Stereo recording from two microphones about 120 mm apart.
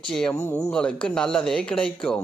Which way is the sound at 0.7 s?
10° left (ahead or behind).